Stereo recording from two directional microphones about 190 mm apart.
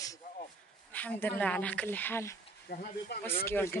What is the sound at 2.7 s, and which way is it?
Speech, 60° left (ahead or behind).